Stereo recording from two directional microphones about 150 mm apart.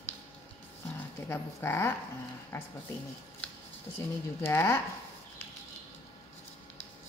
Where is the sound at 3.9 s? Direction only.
15° left (ahead or behind).